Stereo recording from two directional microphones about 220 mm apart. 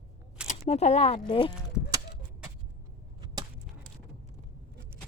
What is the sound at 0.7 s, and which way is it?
Speech, 30° left (ahead or behind).